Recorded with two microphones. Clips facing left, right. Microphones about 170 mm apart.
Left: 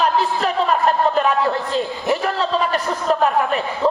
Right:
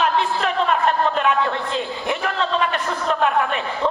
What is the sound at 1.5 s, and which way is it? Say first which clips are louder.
A man's voice: left 3 dB; 40° left (ahead or behind).